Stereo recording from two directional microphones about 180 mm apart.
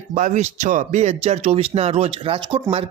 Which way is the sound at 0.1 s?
40° right (ahead or behind).